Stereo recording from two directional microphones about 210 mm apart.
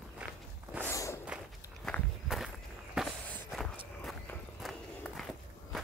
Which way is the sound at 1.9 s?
Centre (ahead or behind).